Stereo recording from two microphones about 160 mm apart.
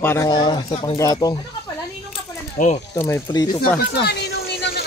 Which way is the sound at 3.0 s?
20° left (ahead or behind).